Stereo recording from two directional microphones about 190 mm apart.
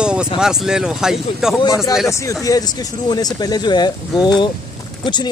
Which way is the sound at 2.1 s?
15° left (ahead or behind).